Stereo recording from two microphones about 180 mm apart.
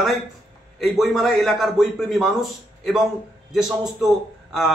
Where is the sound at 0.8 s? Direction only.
Centre (ahead or behind).